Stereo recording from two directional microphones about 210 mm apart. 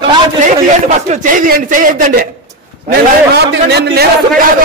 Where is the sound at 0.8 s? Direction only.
35° right (ahead or behind).